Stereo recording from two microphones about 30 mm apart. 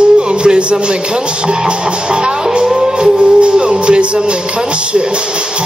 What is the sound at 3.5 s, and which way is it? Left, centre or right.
Music, right.